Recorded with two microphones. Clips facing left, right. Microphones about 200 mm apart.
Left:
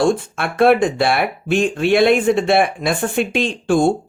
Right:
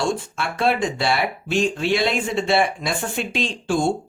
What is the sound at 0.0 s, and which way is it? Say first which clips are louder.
Speech: left 7 dB; 55° left (ahead or behind).